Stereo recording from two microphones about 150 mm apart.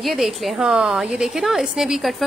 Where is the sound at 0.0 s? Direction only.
Centre (ahead or behind).